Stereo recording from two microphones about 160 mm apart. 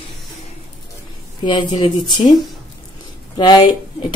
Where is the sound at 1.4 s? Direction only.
30° left (ahead or behind).